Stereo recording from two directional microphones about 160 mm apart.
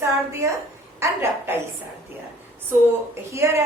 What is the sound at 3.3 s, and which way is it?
Speech, 15° right (ahead or behind).